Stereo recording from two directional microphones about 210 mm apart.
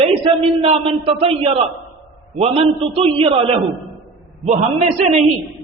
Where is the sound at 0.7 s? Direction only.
25° right (ahead or behind).